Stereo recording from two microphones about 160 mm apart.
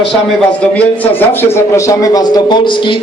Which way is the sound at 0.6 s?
10° left (ahead or behind).